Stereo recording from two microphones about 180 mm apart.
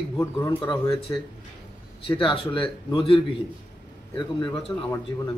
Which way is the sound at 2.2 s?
30° left (ahead or behind).